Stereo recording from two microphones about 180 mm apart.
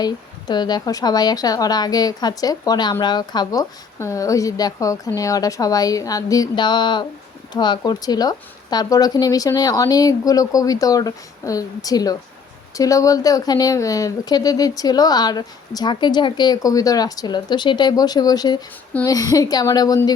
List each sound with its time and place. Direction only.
0.0 s a woman's voice: 20° left (ahead or behind)